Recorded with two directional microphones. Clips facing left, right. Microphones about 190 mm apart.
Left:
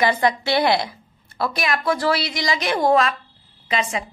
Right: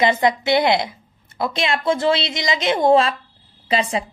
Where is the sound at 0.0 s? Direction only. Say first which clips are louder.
Right 2 dB; 20° right (ahead or behind).